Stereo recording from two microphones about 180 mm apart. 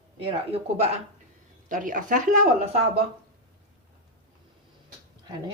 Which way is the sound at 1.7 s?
45° right (ahead or behind).